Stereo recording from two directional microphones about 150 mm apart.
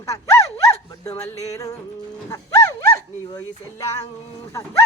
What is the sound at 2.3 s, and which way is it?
Livestock, 20° left (ahead or behind).